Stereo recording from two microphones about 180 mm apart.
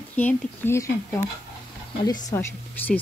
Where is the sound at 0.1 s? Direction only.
10° left (ahead or behind).